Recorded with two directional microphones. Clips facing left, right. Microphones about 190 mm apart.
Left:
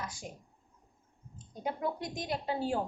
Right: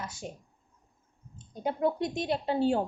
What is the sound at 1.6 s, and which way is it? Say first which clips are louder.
Speech: right 6 dB; 25° right (ahead or behind).